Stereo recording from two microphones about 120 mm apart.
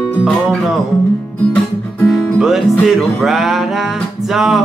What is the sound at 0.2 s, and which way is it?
Music, 5° right (ahead or behind).